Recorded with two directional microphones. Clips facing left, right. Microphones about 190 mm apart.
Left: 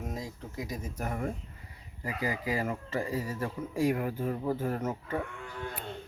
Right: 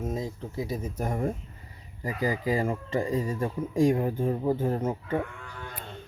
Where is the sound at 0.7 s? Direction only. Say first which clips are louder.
Right 4 dB; 30° right (ahead or behind).